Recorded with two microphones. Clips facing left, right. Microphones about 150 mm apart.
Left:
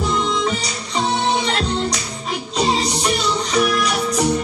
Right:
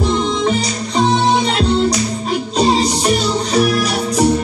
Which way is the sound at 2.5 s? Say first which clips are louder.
Right 4 dB; 35° right (ahead or behind).